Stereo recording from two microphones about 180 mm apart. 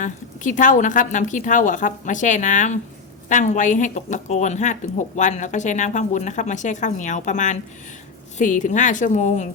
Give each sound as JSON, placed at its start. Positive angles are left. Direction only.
{"t": 0.0, "sound": "a woman's voice", "side_deg": 45}